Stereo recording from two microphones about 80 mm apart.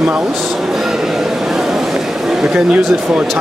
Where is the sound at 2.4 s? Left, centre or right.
Centre.